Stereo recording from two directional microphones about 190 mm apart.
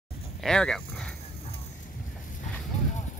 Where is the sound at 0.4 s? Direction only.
5° left (ahead or behind).